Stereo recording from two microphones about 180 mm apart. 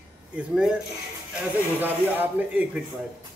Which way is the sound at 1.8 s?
10° right (ahead or behind).